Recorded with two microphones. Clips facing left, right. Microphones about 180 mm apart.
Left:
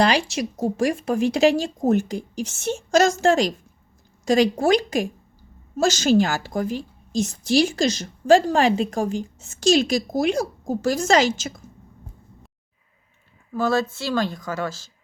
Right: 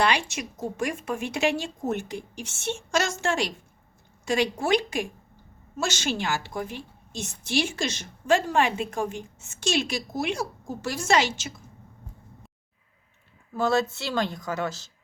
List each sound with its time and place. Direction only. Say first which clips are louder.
0.0 s speech: left 5 dB; 35° left (ahead or behind)
13.6 s speech: left 2 dB; 25° right (ahead or behind)